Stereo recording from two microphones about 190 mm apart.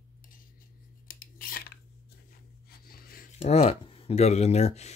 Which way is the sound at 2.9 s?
50° left (ahead or behind).